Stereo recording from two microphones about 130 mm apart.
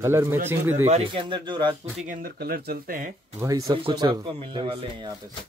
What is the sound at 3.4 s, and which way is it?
Speech, 25° right (ahead or behind).